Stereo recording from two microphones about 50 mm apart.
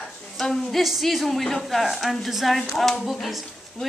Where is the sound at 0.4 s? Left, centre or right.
Centre.